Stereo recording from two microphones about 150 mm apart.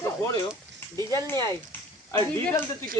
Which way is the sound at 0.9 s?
20° left (ahead or behind).